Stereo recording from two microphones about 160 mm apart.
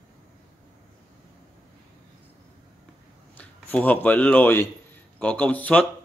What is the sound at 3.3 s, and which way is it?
Speech, 10° left (ahead or behind).